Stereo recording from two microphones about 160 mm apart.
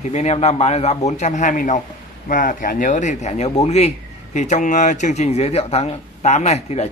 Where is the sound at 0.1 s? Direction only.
45° left (ahead or behind).